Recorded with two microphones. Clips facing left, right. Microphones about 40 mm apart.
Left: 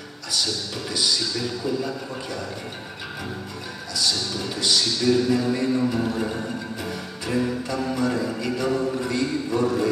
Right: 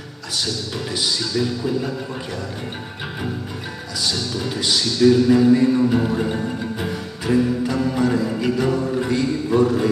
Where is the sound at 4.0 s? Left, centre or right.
Right.